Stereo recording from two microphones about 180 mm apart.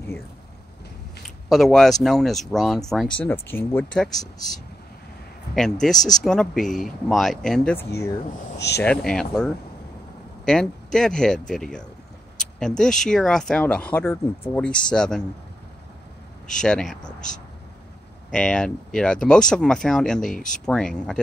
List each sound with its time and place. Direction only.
1.5 s speech: centre (ahead or behind)
8.5 s speech: 70° left (ahead or behind)
8.8 s speech: 5° left (ahead or behind)
16.6 s speech: 5° left (ahead or behind)
18.3 s speech: 5° left (ahead or behind)